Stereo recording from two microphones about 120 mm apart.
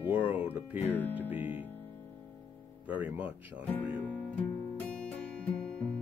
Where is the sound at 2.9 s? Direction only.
15° right (ahead or behind).